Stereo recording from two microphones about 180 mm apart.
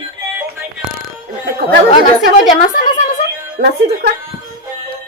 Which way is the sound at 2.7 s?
45° left (ahead or behind).